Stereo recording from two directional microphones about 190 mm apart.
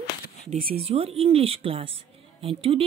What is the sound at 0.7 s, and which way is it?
Speech, 30° right (ahead or behind).